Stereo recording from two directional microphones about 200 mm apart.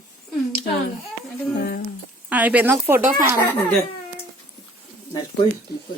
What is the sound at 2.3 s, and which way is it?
A woman's voice, 10° right (ahead or behind).